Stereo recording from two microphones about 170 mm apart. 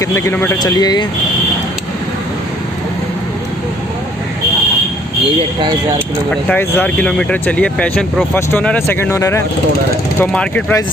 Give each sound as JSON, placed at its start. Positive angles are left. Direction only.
{"t": 0.0, "sound": "speech", "side_deg": 15}
{"t": 0.6, "sound": "speech", "side_deg": 25}
{"t": 6.5, "sound": "speech", "side_deg": 10}